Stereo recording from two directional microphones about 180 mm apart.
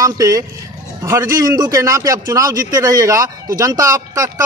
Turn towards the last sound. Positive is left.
turn(degrees=-20)  # may be behind; listen again after turning